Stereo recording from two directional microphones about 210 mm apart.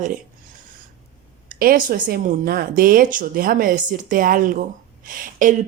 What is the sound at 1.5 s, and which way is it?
Speech, 40° right (ahead or behind).